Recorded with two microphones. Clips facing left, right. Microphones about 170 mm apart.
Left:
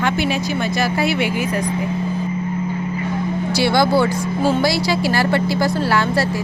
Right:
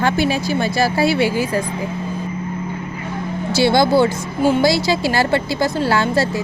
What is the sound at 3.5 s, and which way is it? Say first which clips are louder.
Speech: right 2 dB; 25° right (ahead or behind).